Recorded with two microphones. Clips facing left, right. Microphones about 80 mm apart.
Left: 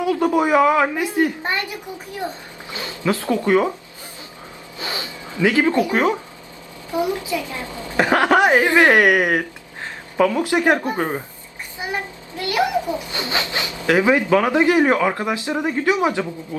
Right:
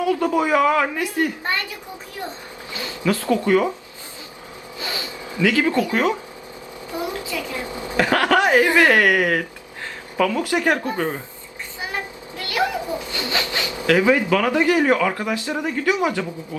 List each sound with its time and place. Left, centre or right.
0.0 s speech: left
2.7 s speech: left
4.8 s zipper: left
6.9 s speech: left
7.6 s a woman's voice: right
7.9 s speech: left
12.4 s a sound: left
13.8 s speech: left